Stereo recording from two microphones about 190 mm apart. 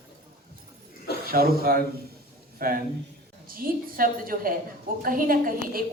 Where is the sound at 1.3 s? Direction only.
50° right (ahead or behind).